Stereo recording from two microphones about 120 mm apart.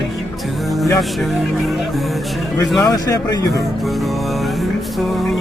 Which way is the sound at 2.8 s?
30° left (ahead or behind).